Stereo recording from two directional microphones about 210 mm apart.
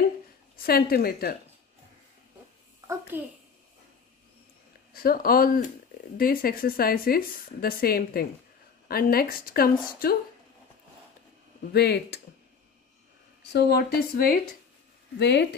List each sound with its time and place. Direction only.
0.6 s speech: 45° left (ahead or behind)
3.1 s a child's voice: 10° right (ahead or behind)
4.9 s speech: 45° left (ahead or behind)
11.7 s speech: 50° left (ahead or behind)
13.4 s speech: 50° left (ahead or behind)